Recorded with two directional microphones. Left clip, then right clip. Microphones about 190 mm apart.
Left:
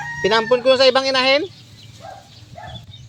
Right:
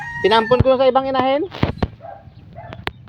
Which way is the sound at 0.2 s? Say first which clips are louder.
Right 2 dB; 25° right (ahead or behind).